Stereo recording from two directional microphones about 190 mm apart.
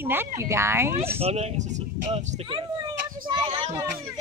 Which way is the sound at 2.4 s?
25° right (ahead or behind).